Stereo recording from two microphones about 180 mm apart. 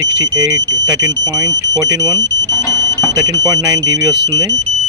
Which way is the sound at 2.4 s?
15° left (ahead or behind).